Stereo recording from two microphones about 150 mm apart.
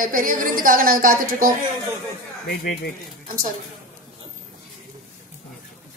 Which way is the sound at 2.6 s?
80° left.